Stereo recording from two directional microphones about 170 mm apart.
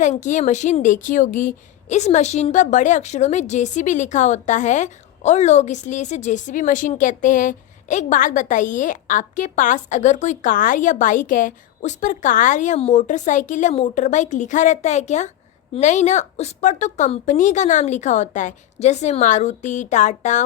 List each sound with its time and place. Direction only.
0.0 s a woman's voice: 45° left (ahead or behind)